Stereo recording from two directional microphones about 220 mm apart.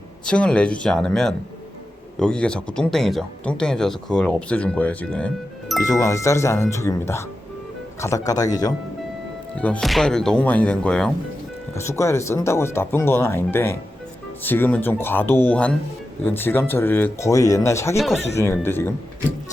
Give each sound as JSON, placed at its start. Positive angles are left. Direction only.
{"t": 0.3, "sound": "speech", "side_deg": 5}
{"t": 5.9, "sound": "speech", "side_deg": 15}
{"t": 9.6, "sound": "speech", "side_deg": 5}
{"t": 17.9, "sound": "speech", "side_deg": 0}
{"t": 18.3, "sound": "speech", "side_deg": 10}